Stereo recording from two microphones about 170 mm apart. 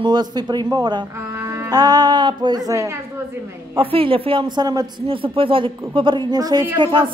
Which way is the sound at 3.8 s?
30° right (ahead or behind).